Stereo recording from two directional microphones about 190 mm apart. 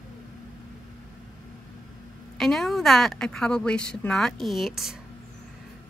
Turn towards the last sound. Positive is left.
turn(degrees=0)  # may be behind; listen again after turning